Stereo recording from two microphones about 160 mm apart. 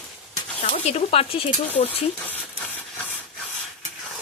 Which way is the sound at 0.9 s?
40° left (ahead or behind).